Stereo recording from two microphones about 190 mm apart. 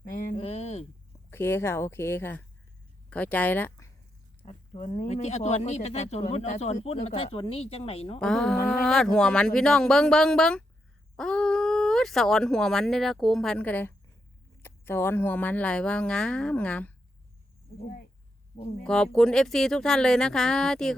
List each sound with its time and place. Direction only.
0.0 s a sound: 50° left (ahead or behind)
0.3 s a sound: 35° left (ahead or behind)
1.3 s speech: 10° left (ahead or behind)
4.4 s speech: 35° left (ahead or behind)
8.2 s speech: centre (ahead or behind)
17.8 s speech: 55° left (ahead or behind)
18.8 s speech: 5° left (ahead or behind)